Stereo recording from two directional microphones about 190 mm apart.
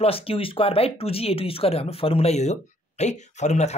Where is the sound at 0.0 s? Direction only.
30° left (ahead or behind).